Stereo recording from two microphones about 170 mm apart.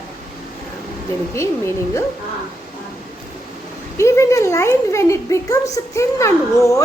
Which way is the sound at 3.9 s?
15° left (ahead or behind).